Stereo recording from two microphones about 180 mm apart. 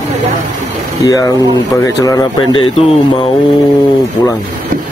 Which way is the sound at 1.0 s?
20° left (ahead or behind).